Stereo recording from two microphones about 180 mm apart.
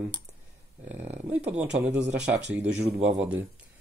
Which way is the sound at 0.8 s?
10° right (ahead or behind).